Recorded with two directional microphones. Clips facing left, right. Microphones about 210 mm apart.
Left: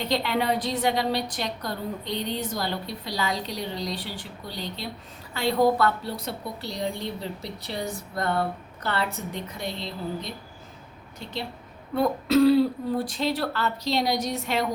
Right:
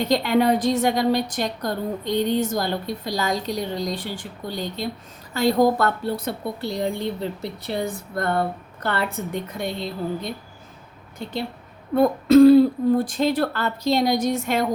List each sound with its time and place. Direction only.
0.0 s a woman's voice: 45° right (ahead or behind)
11.2 s a woman's voice: 55° right (ahead or behind)